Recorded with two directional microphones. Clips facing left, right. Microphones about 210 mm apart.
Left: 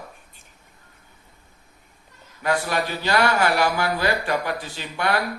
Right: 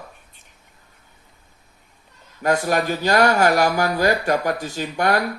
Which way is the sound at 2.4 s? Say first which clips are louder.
Right 4 dB; 45° right (ahead or behind).